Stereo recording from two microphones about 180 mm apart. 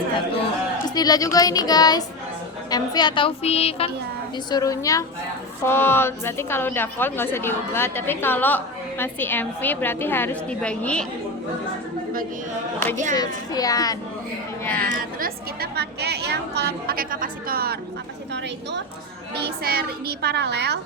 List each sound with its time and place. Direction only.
0.9 s a woman's voice: 20° left (ahead or behind)
4.4 s a woman's voice: 20° left (ahead or behind)
13.1 s a woman's voice: 20° left (ahead or behind)
14.8 s a woman's voice: 55° right (ahead or behind)
19.4 s a woman's voice: 60° right (ahead or behind)